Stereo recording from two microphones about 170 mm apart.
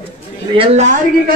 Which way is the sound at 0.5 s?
35° right (ahead or behind).